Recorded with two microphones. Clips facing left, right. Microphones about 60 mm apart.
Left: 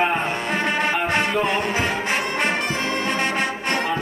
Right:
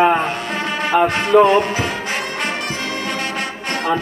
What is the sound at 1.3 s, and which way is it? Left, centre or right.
Speech, right.